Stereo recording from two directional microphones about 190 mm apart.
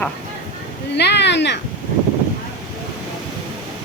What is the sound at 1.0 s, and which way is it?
Speech, 60° left (ahead or behind).